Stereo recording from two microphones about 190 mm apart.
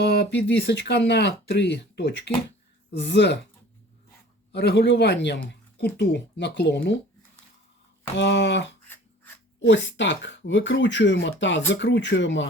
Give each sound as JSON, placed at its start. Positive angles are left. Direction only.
{"t": 0.0, "sound": "speech", "side_deg": 60}
{"t": 4.5, "sound": "speech", "side_deg": 65}
{"t": 8.1, "sound": "speech", "side_deg": 70}
{"t": 8.9, "sound": "a sound", "side_deg": 10}
{"t": 9.6, "sound": "speech", "side_deg": 75}